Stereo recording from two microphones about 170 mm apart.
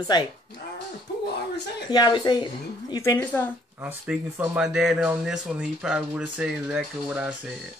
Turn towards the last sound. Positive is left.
turn(degrees=-5)  # may be behind; listen again after turning